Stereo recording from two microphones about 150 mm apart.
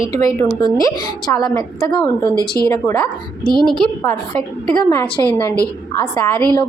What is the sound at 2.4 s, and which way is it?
Speech, 90° left.